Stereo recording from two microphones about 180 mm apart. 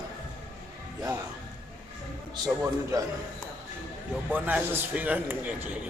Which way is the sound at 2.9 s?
20° right (ahead or behind).